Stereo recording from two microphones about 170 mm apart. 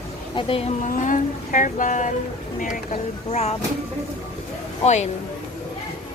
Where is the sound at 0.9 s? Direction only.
50° left (ahead or behind).